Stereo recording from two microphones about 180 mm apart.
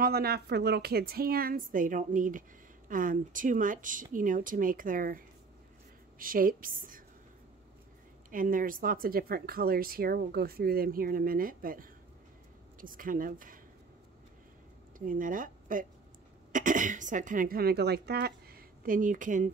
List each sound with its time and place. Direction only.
0.0 s a woman's voice: 60° right (ahead or behind)
8.3 s speech: 50° right (ahead or behind)
15.0 s speech: 50° right (ahead or behind)